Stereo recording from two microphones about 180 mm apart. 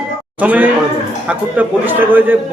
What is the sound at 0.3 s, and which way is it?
A man's voice, 10° right (ahead or behind).